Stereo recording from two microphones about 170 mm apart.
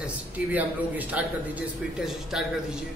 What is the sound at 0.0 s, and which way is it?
A man's voice, 10° right (ahead or behind).